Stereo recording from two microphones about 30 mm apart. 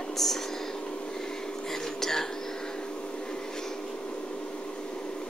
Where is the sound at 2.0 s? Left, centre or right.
Centre.